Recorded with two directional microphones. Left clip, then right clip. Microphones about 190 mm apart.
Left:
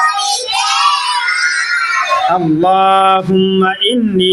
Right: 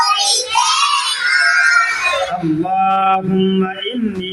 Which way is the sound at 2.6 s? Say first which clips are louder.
Left 5 dB; 40° left (ahead or behind).